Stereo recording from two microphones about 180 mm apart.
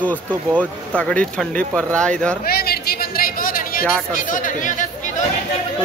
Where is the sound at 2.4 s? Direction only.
60° left (ahead or behind).